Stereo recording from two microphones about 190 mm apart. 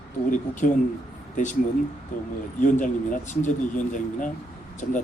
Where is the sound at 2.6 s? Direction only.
40° left (ahead or behind).